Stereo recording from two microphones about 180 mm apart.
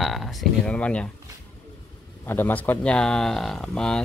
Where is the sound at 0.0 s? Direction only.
Centre (ahead or behind).